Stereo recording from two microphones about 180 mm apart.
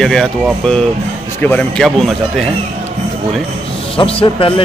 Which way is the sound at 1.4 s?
5° left (ahead or behind).